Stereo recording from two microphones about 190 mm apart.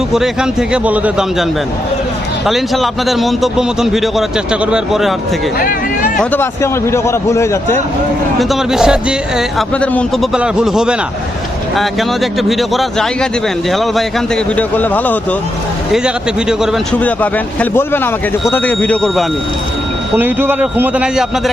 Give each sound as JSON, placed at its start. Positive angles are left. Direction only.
{"t": 0.1, "sound": "a man's voice", "side_deg": -5}
{"t": 2.5, "sound": "a man's voice", "side_deg": 0}
{"t": 5.5, "sound": "a sound", "side_deg": 50}
{"t": 6.1, "sound": "speech", "side_deg": 10}
{"t": 8.4, "sound": "a man's voice", "side_deg": 0}
{"t": 15.9, "sound": "speech", "side_deg": -5}
{"t": 20.1, "sound": "a man's voice", "side_deg": -10}